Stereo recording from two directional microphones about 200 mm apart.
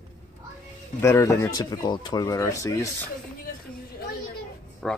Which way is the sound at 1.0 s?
15° left (ahead or behind).